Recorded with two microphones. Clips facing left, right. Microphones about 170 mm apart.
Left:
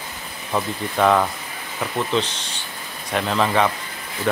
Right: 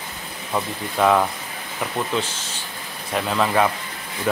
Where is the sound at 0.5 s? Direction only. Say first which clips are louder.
Left 2 dB; 5° right (ahead or behind).